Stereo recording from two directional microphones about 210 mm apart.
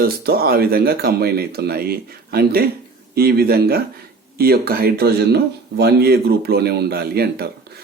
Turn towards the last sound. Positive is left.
turn(degrees=-50)  # may be behind; listen again after turning